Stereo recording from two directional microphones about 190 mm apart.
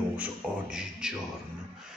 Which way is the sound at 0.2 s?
5° right (ahead or behind).